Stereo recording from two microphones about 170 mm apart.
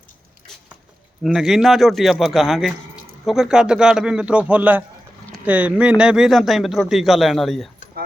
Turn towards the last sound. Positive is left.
turn(degrees=0)  # may be behind; listen again after turning